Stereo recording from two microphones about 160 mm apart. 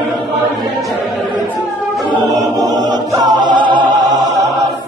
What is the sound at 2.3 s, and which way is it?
Chant, 25° right (ahead or behind).